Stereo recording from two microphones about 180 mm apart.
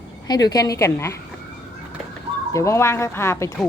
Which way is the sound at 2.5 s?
15° left (ahead or behind).